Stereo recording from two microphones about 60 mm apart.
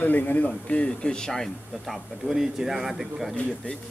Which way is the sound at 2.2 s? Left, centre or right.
Centre.